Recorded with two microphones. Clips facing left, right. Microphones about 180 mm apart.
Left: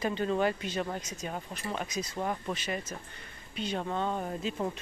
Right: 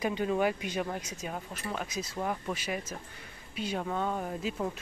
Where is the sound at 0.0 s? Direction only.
10° right (ahead or behind).